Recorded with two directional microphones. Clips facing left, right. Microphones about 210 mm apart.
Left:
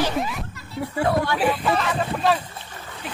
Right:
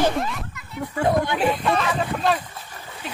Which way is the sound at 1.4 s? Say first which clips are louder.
Even; 5° left (ahead or behind).